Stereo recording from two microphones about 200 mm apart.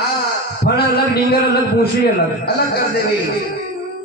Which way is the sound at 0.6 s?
55° left (ahead or behind).